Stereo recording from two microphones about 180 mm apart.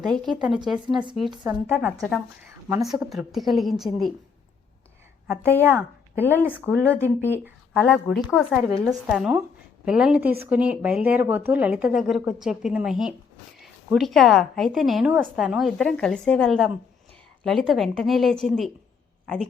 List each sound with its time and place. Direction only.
0.0 s speech: 5° left (ahead or behind)
1.5 s speech: 10° right (ahead or behind)
2.0 s speech: centre (ahead or behind)
2.5 s a sound: 15° right (ahead or behind)
3.1 s speech: centre (ahead or behind)
5.5 s speech: 10° right (ahead or behind)